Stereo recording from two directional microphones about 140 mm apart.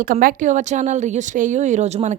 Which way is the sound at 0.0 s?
90° right.